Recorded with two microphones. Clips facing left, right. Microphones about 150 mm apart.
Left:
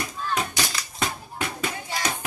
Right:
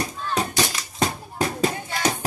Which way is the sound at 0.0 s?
35° right (ahead or behind).